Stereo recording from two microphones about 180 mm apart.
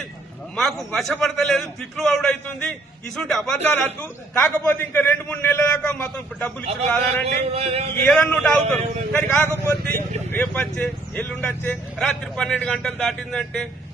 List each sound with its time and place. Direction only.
0.5 s a man's voice: centre (ahead or behind)
7.5 s speech: 35° right (ahead or behind)
8.0 s a man's voice: 5° left (ahead or behind)
9.7 s speech: 60° right (ahead or behind)
10.2 s a man's voice: 10° left (ahead or behind)